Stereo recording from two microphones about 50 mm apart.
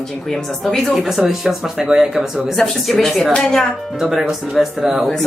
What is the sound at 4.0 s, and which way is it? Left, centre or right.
Speech, centre.